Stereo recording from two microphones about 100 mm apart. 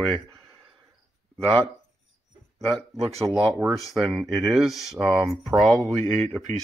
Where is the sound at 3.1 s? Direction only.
5° left (ahead or behind); by 5.2 s 15° right (ahead or behind).